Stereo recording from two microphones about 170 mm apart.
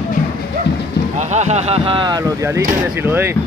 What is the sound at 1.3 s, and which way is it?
Speech, 40° right (ahead or behind).